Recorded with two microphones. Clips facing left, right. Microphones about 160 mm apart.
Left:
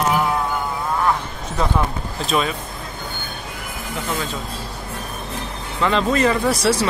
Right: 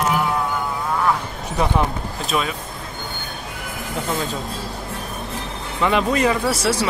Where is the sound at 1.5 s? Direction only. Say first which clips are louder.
Right 1 dB; 15° right (ahead or behind).